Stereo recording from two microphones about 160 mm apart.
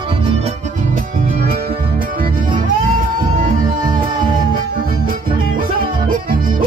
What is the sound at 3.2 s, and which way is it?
Music, 60° right (ahead or behind).